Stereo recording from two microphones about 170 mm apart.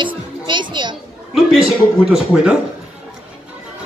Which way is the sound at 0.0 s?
30° right (ahead or behind).